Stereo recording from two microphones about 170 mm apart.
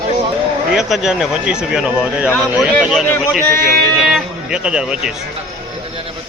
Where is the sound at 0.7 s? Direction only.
Centre (ahead or behind).